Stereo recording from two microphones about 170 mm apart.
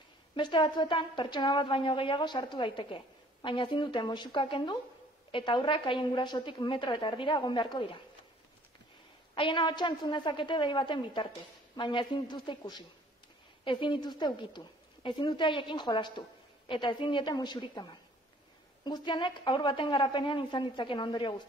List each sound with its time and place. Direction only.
0.4 s a woman's voice: 30° left (ahead or behind)
9.3 s a woman's voice: 30° left (ahead or behind)
18.9 s a woman's voice: 25° left (ahead or behind)